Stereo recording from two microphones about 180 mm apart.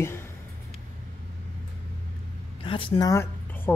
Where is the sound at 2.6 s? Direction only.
30° left (ahead or behind).